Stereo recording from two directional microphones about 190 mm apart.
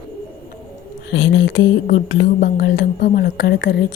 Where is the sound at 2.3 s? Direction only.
55° left (ahead or behind).